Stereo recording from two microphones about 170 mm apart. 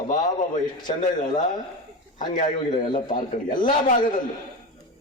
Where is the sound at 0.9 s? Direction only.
40° left (ahead or behind).